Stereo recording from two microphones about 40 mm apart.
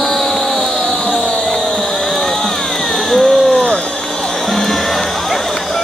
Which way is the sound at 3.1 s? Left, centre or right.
Centre.